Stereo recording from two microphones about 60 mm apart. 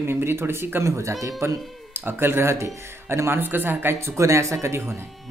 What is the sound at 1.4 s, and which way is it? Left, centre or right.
Speech, right.